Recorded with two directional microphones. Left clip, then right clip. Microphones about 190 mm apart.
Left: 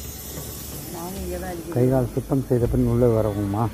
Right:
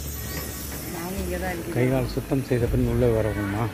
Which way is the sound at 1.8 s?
15° left (ahead or behind).